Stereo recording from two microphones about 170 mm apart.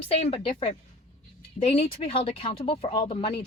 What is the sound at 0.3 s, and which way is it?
Speech, 30° left (ahead or behind).